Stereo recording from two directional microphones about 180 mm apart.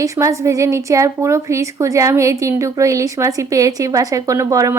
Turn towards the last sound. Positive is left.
turn(degrees=-15)  # may be behind; listen again after turning